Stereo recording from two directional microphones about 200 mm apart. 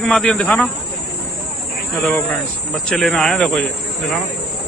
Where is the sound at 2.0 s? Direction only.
10° left (ahead or behind).